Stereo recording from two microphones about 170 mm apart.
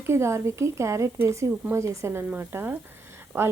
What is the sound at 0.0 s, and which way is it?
A woman's voice, 15° right (ahead or behind).